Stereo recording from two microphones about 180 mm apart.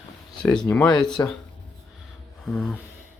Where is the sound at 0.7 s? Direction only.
5° left (ahead or behind).